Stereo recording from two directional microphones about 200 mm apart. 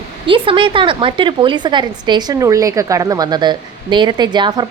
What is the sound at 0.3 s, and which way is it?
A woman's voice, 25° right (ahead or behind).